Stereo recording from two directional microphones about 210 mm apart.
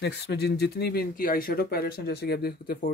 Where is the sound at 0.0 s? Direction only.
50° left (ahead or behind).